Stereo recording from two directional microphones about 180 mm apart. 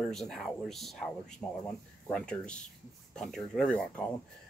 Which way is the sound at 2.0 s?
5° left (ahead or behind).